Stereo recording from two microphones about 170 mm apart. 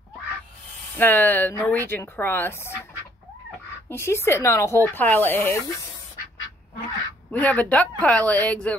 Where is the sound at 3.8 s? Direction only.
15° left (ahead or behind).